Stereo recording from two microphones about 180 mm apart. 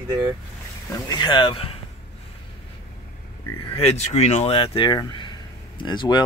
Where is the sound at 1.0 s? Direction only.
25° left (ahead or behind).